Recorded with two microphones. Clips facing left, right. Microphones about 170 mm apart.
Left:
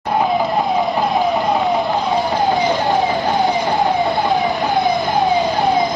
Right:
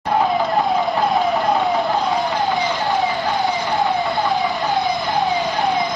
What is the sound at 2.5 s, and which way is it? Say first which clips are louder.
Emergency vehicle: left 4 dB; 40° left (ahead or behind).